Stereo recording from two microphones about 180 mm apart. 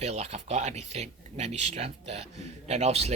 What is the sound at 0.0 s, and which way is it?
Speech, 35° right (ahead or behind).